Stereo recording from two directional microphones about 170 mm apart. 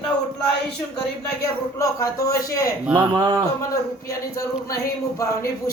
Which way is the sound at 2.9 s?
25° right (ahead or behind).